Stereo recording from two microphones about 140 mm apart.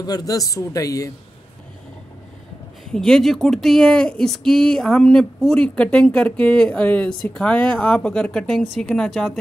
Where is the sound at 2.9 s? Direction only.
5° left (ahead or behind).